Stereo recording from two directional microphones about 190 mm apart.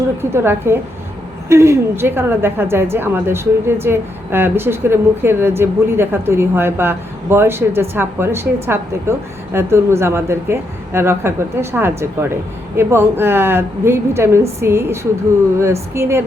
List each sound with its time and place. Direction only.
0.2 s a woman's voice: 15° right (ahead or behind)